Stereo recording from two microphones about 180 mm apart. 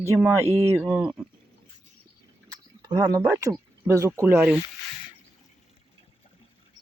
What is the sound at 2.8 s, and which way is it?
Speech, 15° right (ahead or behind).